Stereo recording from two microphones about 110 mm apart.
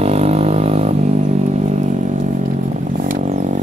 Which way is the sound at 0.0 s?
70° right (ahead or behind).